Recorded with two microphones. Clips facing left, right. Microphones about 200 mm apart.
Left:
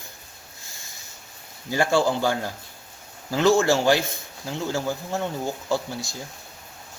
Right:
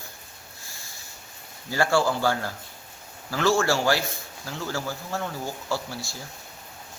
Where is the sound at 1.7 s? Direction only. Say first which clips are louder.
Left 2 dB; 20° left (ahead or behind).